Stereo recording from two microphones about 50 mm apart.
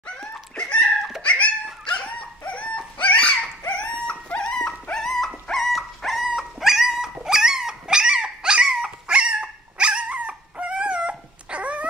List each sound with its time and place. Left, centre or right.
0.2 s dog: centre; by 11.8 s right